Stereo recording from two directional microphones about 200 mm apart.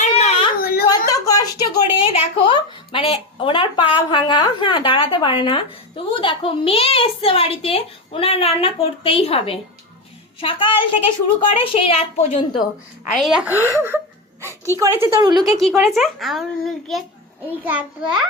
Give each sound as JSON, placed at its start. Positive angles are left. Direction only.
{"t": 0.0, "sound": "baby cry", "side_deg": 30}
{"t": 0.6, "sound": "a sound", "side_deg": 50}
{"t": 0.9, "sound": "a woman's voice", "side_deg": 15}
{"t": 13.1, "sound": "a woman's voice", "side_deg": 0}
{"t": 15.5, "sound": "a child's voice", "side_deg": 0}